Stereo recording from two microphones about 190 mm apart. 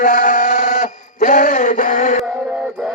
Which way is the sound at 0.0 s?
45° left (ahead or behind).